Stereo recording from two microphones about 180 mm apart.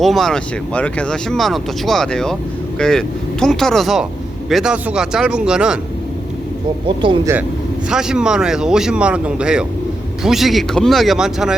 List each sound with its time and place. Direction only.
0.0 s speech: centre (ahead or behind)
6.8 s speech: 25° right (ahead or behind)
7.9 s speech: 5° right (ahead or behind)